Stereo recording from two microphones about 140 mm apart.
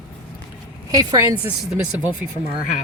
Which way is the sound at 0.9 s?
25° right (ahead or behind).